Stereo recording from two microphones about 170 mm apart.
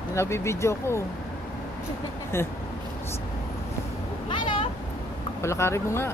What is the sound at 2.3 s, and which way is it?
Speech, 15° left (ahead or behind).